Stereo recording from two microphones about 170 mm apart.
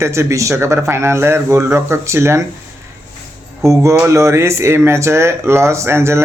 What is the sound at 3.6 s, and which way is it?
Speech, 20° right (ahead or behind).